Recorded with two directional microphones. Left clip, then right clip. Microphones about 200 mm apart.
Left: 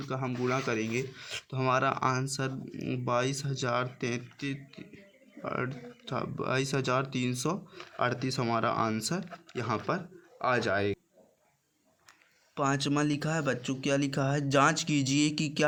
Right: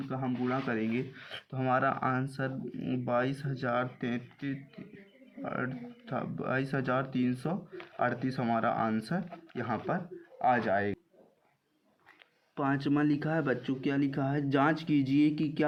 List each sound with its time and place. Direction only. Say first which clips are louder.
0.1 s speech: left 3 dB; 50° left (ahead or behind)
10.4 s speech: even; 45° left (ahead or behind)
12.5 s speech: left 1 dB; 35° left (ahead or behind)